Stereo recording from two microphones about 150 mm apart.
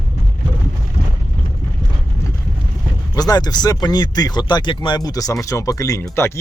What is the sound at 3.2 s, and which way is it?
Speech, 25° left (ahead or behind).